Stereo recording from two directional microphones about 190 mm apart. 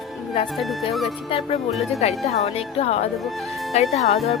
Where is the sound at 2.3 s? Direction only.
30° left (ahead or behind).